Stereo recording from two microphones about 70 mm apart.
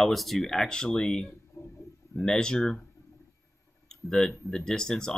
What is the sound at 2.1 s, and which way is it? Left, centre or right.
Speech, centre.